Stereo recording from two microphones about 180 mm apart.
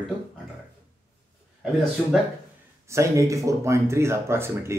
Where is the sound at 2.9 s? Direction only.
15° right (ahead or behind).